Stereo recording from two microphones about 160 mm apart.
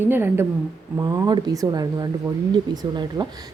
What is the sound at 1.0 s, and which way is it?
A woman's voice, 25° right (ahead or behind).